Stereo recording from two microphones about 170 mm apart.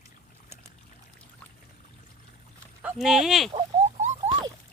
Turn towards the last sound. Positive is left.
turn(degrees=-45)  # may be behind; listen again after turning